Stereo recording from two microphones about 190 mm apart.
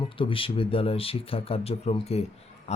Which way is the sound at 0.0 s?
25° left (ahead or behind).